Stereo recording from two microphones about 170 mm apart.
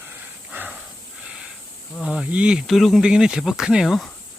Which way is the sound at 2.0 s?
5° right (ahead or behind).